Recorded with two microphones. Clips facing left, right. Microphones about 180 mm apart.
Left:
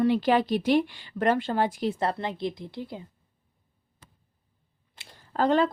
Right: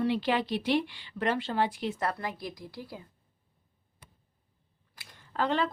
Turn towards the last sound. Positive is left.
turn(degrees=45)  # may be behind; listen again after turning